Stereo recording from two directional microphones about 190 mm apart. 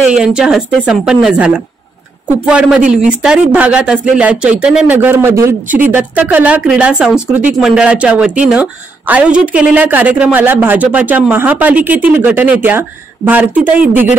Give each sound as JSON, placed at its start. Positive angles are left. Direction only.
{"t": 0.0, "sound": "a woman's voice", "side_deg": -5}